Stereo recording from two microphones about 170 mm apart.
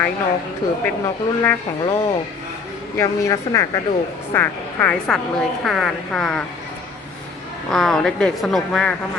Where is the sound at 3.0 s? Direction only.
20° left (ahead or behind).